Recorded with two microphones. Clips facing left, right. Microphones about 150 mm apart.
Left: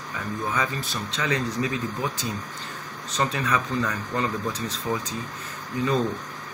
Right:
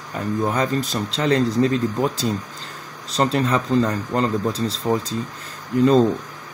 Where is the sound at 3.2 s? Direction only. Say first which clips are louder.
Right 6 dB; 30° right (ahead or behind).